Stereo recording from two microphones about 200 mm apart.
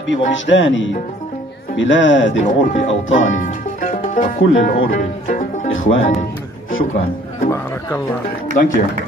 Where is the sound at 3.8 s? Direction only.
40° left (ahead or behind).